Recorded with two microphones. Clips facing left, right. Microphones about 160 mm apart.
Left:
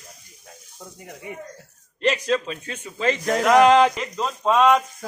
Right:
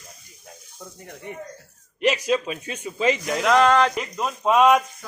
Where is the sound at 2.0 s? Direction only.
10° right (ahead or behind).